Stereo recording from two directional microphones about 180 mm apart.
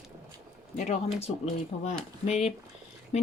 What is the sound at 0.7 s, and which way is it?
Speech, 40° left (ahead or behind).